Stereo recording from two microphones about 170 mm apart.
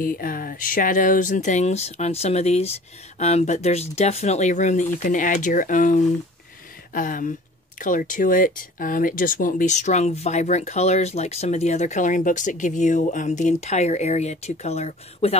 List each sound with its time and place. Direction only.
0.0 s speech: 55° left (ahead or behind); by 15.3 s 40° left (ahead or behind)